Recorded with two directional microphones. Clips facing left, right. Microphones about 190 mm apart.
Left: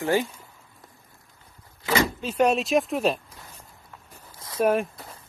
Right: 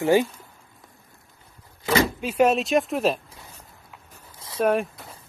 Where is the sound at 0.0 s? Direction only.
15° right (ahead or behind).